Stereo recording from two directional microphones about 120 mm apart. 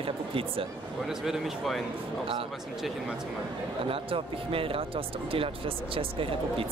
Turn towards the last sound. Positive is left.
turn(degrees=-50)  # may be behind; listen again after turning